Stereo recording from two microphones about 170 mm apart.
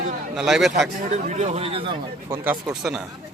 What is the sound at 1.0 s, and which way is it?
Speech, 45° right (ahead or behind).